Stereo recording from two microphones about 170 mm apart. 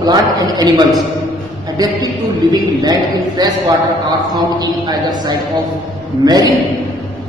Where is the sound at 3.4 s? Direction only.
25° right (ahead or behind).